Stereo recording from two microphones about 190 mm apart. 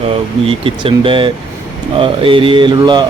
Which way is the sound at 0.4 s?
30° right (ahead or behind).